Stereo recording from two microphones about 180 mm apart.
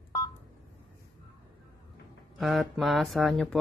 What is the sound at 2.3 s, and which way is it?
Speech, centre (ahead or behind).